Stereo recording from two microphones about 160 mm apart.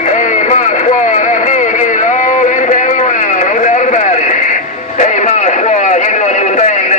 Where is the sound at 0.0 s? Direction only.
50° left (ahead or behind).